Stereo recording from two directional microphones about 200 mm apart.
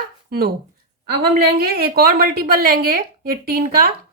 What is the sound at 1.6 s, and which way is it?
A woman's voice, 50° right (ahead or behind).